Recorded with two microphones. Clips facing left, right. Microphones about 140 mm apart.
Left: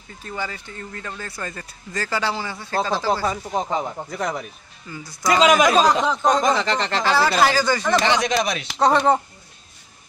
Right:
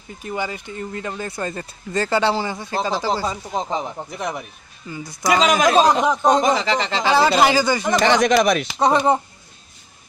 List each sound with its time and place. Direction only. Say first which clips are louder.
0.2 s speech: right 4 dB; 15° right (ahead or behind)
5.4 s speech: left 2 dB; centre (ahead or behind)
5.8 s speech: right 2 dB; 20° right (ahead or behind)
6.4 s speech: right 1 dB; 5° right (ahead or behind)
7.0 s speech: right 3 dB; 15° right (ahead or behind)
8.0 s speech: right 5 dB; 50° right (ahead or behind)
8.6 s speech: even; 10° right (ahead or behind)